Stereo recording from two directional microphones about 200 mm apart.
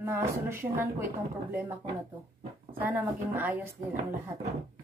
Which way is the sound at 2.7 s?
10° right (ahead or behind).